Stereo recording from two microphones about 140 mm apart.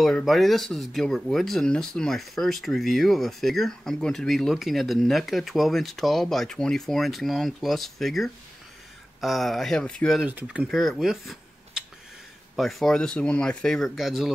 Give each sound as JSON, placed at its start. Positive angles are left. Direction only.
{"t": 0.0, "sound": "speech", "side_deg": 0}
{"t": 10.2, "sound": "speech", "side_deg": -10}
{"t": 10.7, "sound": "speech", "side_deg": 0}